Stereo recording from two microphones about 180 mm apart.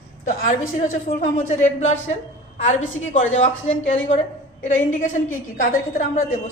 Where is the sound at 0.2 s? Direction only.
45° left (ahead or behind).